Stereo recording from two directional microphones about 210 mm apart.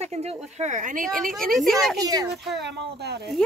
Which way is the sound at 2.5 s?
55° right (ahead or behind).